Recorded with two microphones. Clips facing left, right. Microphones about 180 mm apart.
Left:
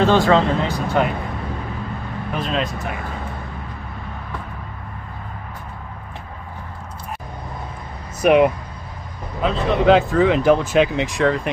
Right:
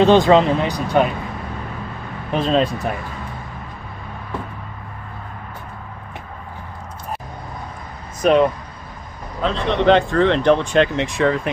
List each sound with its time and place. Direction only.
0.0 s speech: 20° right (ahead or behind)
2.3 s speech: 30° right (ahead or behind)
8.2 s speech: 10° left (ahead or behind)